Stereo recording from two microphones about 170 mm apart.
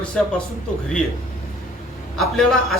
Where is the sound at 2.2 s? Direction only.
Centre (ahead or behind).